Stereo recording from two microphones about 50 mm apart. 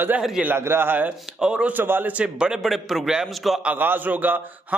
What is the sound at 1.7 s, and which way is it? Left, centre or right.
Speech, right.